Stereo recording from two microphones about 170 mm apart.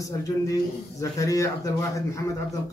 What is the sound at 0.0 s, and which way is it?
Speech, 20° left (ahead or behind).